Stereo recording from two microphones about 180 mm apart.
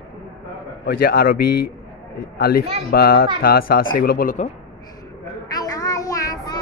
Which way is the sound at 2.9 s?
55° left (ahead or behind).